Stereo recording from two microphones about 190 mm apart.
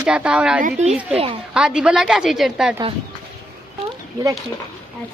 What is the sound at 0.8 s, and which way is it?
Speech, 35° right (ahead or behind).